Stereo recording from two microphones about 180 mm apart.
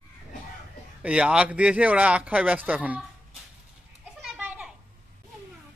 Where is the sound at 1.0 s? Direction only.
5° right (ahead or behind).